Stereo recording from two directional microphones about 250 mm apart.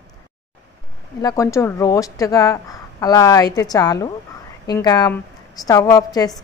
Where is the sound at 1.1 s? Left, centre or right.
Centre.